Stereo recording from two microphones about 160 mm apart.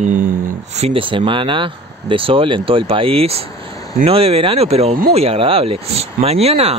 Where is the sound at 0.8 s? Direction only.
35° right (ahead or behind).